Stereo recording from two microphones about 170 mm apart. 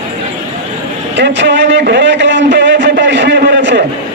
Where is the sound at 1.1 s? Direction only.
90° right.